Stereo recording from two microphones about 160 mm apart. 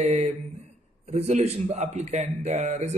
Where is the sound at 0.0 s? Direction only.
40° right (ahead or behind).